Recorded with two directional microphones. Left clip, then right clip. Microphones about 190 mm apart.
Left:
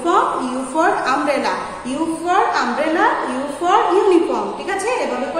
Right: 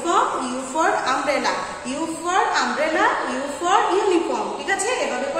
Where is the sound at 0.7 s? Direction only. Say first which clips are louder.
Left 3 dB; 20° left (ahead or behind).